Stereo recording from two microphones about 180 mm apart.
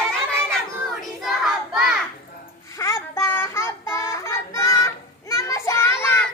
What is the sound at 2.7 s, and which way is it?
Child singing, 15° left (ahead or behind).